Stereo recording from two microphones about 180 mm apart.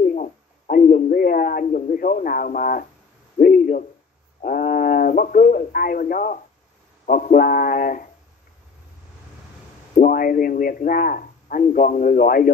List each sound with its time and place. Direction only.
0.1 s a sound: 50° left (ahead or behind)
4.4 s speech: 50° left (ahead or behind)
9.9 s speech: 50° left (ahead or behind)